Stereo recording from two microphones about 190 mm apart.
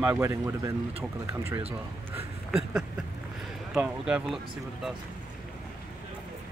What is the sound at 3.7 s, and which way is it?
Speech, 5° right (ahead or behind).